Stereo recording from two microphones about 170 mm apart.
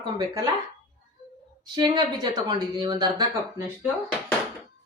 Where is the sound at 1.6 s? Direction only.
25° right (ahead or behind).